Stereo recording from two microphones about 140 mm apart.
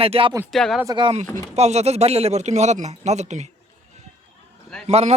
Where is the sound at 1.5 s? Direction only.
50° right (ahead or behind).